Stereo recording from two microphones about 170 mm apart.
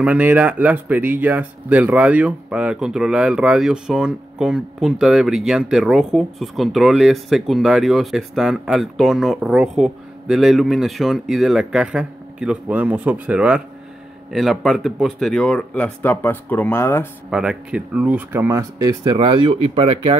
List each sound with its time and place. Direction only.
0.0 s speech: 10° right (ahead or behind); by 17.1 s 15° left (ahead or behind)
17.3 s speech: 5° right (ahead or behind); by 20.2 s 30° right (ahead or behind)